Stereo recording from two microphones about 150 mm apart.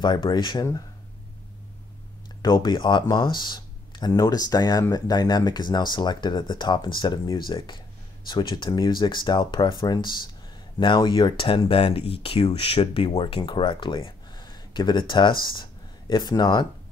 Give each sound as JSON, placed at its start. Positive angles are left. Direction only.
{"t": 0.0, "sound": "speech", "side_deg": 30}
{"t": 2.4, "sound": "speech", "side_deg": 30}